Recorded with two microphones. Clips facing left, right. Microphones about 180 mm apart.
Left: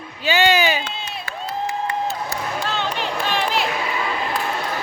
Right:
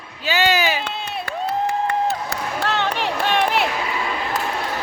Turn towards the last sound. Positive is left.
turn(degrees=-60)  # may be behind; listen again after turning